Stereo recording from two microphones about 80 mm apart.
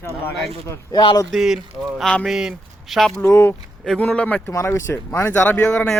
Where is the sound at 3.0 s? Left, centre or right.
Centre.